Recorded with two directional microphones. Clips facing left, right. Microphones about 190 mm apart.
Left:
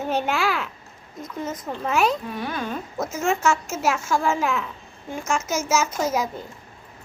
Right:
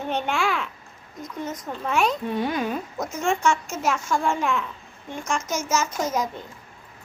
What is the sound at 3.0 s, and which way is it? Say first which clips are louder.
A child's voice: left 1 dB; 5° left (ahead or behind).